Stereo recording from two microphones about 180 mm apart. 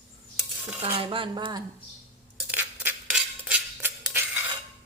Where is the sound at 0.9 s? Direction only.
30° right (ahead or behind).